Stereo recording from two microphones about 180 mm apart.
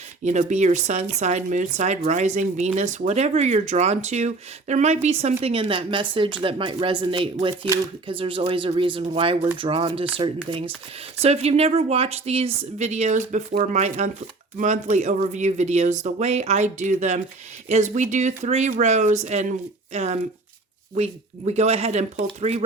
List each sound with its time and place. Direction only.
0.3 s speech: 40° right (ahead or behind)
11.2 s speech: 35° right (ahead or behind)